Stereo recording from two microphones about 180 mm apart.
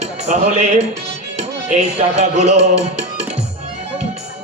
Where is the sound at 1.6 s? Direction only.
35° right (ahead or behind).